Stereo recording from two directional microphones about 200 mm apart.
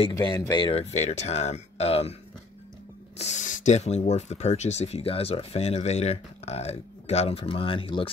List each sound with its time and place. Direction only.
0.1 s speech: 20° left (ahead or behind)
3.2 s speech: 35° left (ahead or behind)